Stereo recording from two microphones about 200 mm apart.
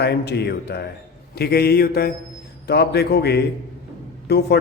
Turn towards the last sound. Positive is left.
turn(degrees=55)  # may be behind; listen again after turning